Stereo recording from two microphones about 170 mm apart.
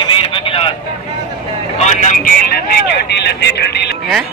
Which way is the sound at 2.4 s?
65° left (ahead or behind).